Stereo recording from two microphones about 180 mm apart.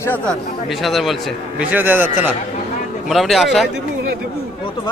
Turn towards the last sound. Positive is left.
turn(degrees=0)  # may be behind; listen again after turning